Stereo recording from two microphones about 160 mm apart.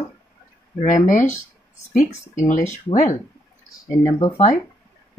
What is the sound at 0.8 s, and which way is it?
Speech, 50° left (ahead or behind).